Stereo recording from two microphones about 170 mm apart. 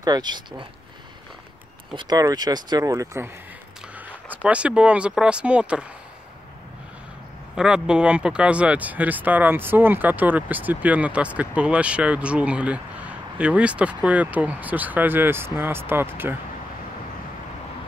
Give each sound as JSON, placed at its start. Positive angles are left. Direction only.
{"t": 0.0, "sound": "speech", "side_deg": -25}
{"t": 2.0, "sound": "speech", "side_deg": -20}
{"t": 4.3, "sound": "speech", "side_deg": -10}
{"t": 7.5, "sound": "speech", "side_deg": -5}